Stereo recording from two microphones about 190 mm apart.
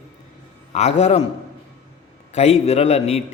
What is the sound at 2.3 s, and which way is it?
Speech, 35° left (ahead or behind).